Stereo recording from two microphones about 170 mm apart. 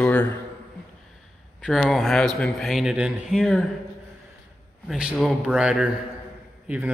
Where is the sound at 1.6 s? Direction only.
Centre (ahead or behind).